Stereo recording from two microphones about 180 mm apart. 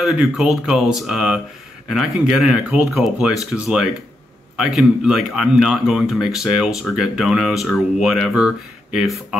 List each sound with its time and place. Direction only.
0.0 s speech: 5° right (ahead or behind)